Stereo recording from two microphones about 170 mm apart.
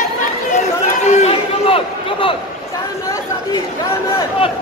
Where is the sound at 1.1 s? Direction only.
40° left (ahead or behind).